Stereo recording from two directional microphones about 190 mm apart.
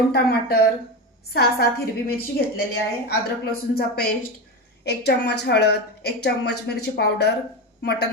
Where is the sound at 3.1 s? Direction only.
55° left (ahead or behind).